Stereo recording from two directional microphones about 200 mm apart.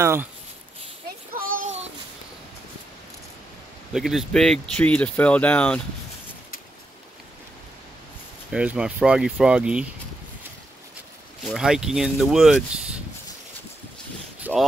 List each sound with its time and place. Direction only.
0.0 s speech: 10° right (ahead or behind)
1.3 s child singing: 45° right (ahead or behind)
3.9 s speech: centre (ahead or behind)
8.5 s speech: 5° right (ahead or behind)
11.4 s speech: centre (ahead or behind)
14.5 s a sound: 5° right (ahead or behind)